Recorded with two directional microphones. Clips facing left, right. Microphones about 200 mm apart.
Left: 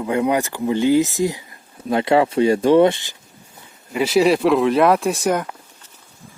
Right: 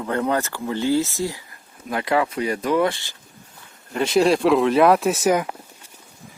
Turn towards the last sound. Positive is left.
turn(degrees=-5)  # may be behind; listen again after turning